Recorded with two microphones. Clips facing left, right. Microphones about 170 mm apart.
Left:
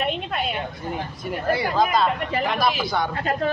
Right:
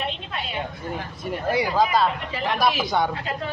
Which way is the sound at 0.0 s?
60° left (ahead or behind).